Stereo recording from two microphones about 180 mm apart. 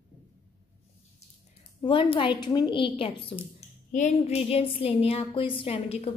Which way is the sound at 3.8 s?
40° left (ahead or behind).